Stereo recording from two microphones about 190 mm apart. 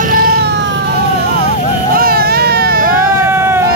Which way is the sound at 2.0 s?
50° right (ahead or behind).